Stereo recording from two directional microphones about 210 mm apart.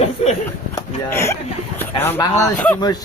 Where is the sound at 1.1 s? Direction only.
10° left (ahead or behind).